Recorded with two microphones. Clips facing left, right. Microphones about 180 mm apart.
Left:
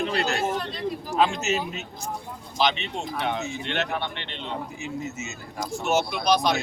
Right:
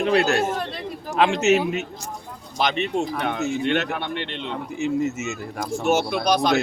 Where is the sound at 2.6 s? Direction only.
50° right (ahead or behind).